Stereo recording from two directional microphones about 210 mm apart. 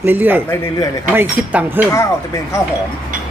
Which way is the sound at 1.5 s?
10° right (ahead or behind).